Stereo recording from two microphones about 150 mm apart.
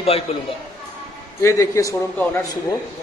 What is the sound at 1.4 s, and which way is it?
Speech, 20° left (ahead or behind).